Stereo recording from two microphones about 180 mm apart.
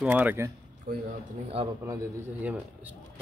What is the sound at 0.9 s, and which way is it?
Speech, 55° right (ahead or behind).